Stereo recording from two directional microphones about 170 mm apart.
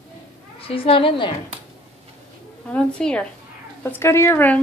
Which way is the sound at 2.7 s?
5° left (ahead or behind).